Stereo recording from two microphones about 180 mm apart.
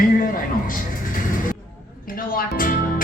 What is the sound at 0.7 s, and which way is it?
Music, 50° left (ahead or behind).